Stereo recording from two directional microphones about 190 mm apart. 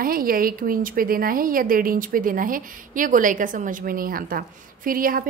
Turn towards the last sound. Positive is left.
turn(degrees=-50)  # may be behind; listen again after turning